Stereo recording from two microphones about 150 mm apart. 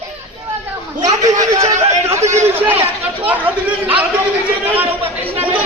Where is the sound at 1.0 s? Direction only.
50° right (ahead or behind).